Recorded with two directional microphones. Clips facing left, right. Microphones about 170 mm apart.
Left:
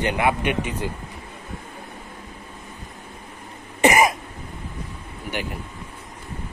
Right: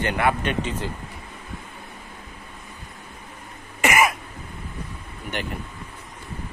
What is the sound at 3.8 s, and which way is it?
Cough, 30° left (ahead or behind).